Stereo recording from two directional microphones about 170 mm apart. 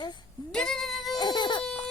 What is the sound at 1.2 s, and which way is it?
Baby cry, 25° left (ahead or behind).